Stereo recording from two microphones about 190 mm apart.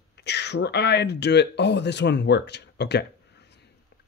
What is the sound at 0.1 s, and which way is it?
Speech, 60° left (ahead or behind).